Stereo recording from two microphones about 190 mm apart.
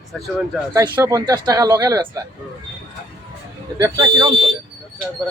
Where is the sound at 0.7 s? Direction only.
15° right (ahead or behind).